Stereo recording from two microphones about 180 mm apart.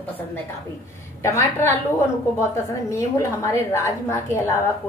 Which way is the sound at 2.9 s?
15° left (ahead or behind).